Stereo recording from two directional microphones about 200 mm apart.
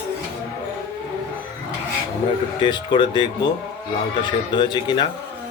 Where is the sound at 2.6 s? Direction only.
25° left (ahead or behind).